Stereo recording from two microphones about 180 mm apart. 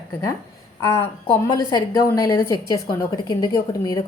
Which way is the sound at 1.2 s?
25° left (ahead or behind).